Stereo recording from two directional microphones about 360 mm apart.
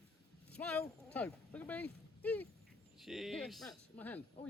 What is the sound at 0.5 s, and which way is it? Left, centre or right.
Speech, centre.